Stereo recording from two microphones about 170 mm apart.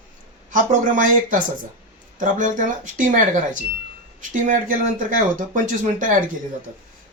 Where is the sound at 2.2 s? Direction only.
50° right (ahead or behind).